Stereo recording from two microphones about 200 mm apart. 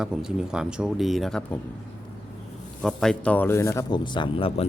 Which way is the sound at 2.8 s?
5° left (ahead or behind).